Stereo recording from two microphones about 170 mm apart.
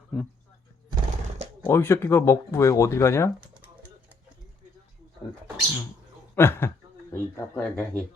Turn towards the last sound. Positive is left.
turn(degrees=10)  # may be behind; listen again after turning